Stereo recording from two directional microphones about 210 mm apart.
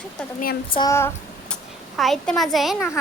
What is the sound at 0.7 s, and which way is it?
Speech, 15° left (ahead or behind).